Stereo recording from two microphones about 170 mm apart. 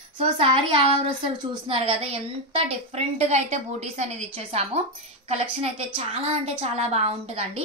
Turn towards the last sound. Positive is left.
turn(degrees=-35)  # may be behind; listen again after turning